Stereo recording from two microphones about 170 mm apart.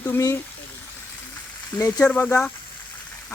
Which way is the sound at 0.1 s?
15° left (ahead or behind).